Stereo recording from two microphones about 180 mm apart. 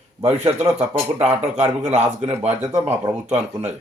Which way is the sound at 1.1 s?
40° right (ahead or behind).